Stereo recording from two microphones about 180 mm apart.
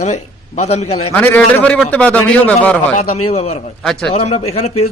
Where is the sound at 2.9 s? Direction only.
35° left (ahead or behind).